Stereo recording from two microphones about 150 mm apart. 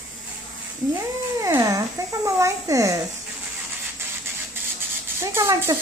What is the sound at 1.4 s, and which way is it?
Speech, 20° right (ahead or behind).